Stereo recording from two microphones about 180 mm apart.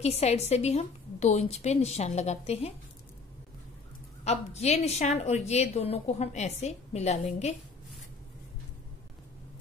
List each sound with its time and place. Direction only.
0.0 s a woman's voice: 35° left (ahead or behind)
4.2 s a woman's voice: 35° left (ahead or behind)